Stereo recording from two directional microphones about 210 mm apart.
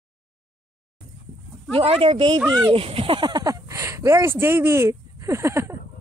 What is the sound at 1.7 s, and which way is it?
Speech, 25° right (ahead or behind).